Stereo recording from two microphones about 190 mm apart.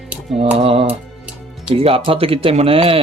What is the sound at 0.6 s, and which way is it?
Speech, 30° right (ahead or behind).